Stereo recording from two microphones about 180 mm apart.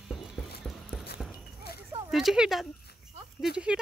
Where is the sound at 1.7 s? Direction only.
60° left (ahead or behind).